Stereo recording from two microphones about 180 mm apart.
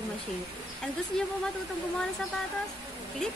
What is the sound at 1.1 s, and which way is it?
Speech, 5° left (ahead or behind).